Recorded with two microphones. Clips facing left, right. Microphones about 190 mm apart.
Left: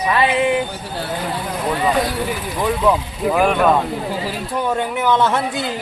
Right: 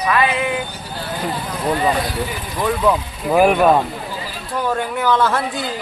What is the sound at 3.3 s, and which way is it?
Speech, 5° right (ahead or behind).